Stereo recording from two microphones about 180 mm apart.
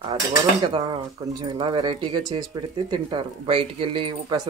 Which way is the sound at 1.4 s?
30° right (ahead or behind).